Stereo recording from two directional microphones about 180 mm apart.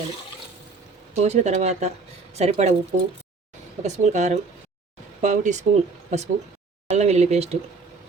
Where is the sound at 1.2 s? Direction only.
40° right (ahead or behind).